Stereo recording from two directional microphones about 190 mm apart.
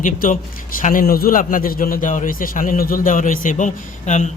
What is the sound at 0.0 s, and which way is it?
A man's voice, 45° left (ahead or behind).